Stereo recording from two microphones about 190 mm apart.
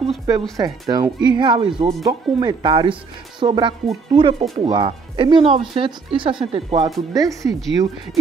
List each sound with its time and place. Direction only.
0.3 s speech: 20° right (ahead or behind)